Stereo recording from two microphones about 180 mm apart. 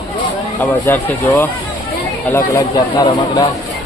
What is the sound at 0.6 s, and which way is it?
Speech, 10° left (ahead or behind).